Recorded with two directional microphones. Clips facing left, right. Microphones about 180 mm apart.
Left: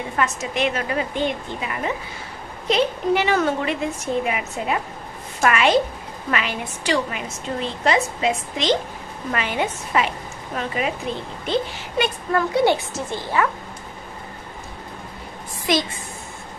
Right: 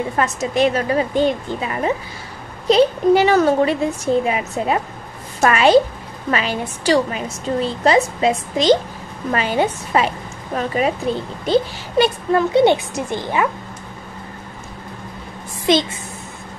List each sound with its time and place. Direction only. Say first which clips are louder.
0.2 s a woman's voice: right 5 dB; 35° right (ahead or behind)
12.3 s a woman's voice: right 3 dB; 25° right (ahead or behind)
15.7 s a woman's voice: right 5 dB; 25° right (ahead or behind)